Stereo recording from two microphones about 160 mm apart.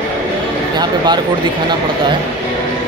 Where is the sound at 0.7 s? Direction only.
25° right (ahead or behind).